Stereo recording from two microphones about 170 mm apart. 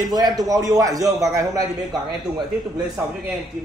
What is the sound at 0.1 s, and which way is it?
A man's voice, 25° right (ahead or behind).